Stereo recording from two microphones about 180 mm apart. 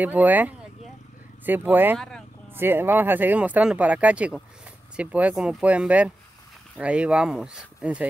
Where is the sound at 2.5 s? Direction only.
10° right (ahead or behind).